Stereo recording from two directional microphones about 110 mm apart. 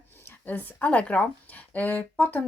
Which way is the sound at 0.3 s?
15° left (ahead or behind).